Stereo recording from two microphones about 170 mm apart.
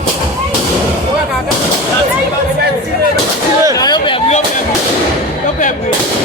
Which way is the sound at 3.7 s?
25° left (ahead or behind).